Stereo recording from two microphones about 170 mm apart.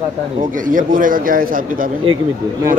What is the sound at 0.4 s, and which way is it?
A man's voice, 50° right (ahead or behind).